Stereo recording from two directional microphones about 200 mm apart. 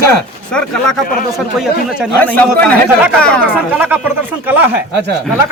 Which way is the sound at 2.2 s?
5° left (ahead or behind).